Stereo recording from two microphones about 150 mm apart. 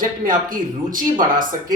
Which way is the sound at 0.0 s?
65° right (ahead or behind).